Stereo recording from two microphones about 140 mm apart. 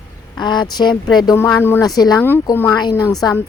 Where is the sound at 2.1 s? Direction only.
15° left (ahead or behind).